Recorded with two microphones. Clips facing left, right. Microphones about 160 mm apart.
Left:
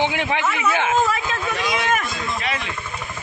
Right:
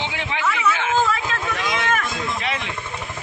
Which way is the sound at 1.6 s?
15° left (ahead or behind).